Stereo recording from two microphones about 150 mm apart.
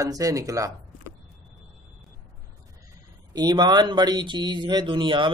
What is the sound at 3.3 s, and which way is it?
Speech, 30° right (ahead or behind).